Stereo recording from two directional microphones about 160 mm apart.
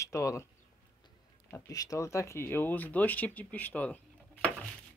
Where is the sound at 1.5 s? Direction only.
20° left (ahead or behind).